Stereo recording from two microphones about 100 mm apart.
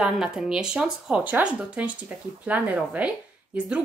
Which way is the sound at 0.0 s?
10° right (ahead or behind).